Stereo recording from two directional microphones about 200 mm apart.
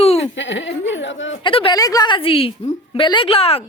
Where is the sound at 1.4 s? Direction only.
25° left (ahead or behind).